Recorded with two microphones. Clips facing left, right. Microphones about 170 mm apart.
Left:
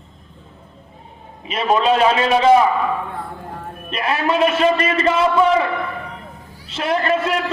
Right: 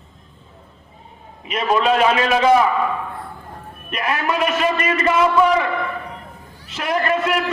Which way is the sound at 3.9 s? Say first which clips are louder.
Left 2 dB; 30° left (ahead or behind).